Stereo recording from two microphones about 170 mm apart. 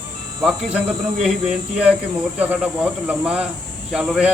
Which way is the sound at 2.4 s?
10° right (ahead or behind).